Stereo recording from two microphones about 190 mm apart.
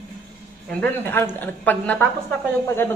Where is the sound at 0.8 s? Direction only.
10° left (ahead or behind).